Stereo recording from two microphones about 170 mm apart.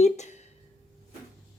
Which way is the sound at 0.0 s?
40° left (ahead or behind).